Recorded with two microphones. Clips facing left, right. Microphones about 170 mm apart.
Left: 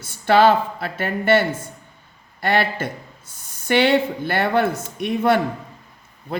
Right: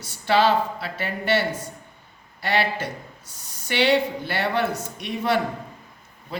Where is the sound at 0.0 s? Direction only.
50° left (ahead or behind).